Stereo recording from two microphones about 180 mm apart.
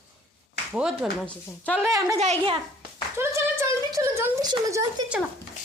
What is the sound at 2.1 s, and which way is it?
Speech, 35° right (ahead or behind).